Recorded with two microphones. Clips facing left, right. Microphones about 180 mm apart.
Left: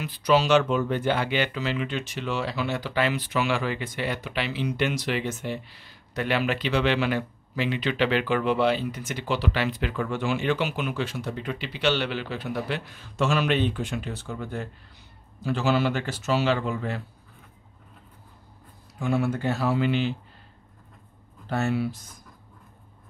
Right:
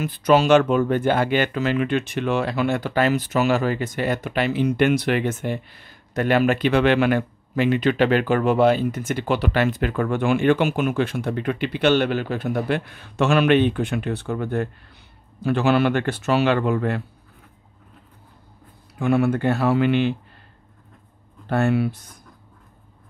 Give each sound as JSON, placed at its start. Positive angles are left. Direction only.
{"t": 0.0, "sound": "speech", "side_deg": -50}
{"t": 18.9, "sound": "speech", "side_deg": -60}
{"t": 21.5, "sound": "speech", "side_deg": -60}